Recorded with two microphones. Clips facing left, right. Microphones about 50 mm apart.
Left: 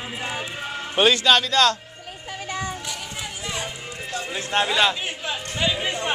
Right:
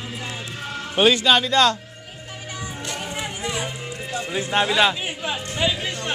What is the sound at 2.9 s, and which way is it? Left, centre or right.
Chatter, right.